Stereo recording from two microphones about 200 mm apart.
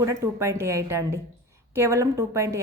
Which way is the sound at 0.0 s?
15° right (ahead or behind).